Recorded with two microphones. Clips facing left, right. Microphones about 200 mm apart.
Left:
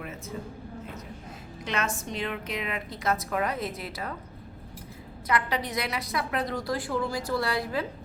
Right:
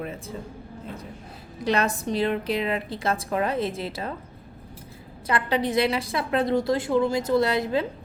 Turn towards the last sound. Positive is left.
turn(degrees=-25)  # may be behind; listen again after turning